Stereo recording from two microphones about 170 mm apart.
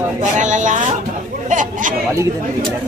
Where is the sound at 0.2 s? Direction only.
45° right (ahead or behind).